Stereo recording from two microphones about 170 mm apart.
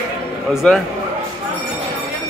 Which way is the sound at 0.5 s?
Centre (ahead or behind).